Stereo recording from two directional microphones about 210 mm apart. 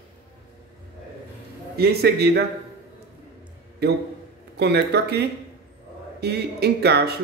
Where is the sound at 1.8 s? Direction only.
50° right (ahead or behind).